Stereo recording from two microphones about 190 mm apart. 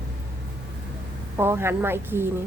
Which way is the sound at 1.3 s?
10° right (ahead or behind).